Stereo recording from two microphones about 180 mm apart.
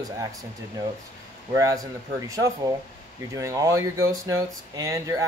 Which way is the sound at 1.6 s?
20° right (ahead or behind).